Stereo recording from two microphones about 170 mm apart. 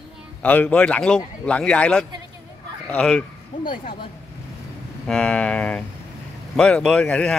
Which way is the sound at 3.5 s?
30° left (ahead or behind).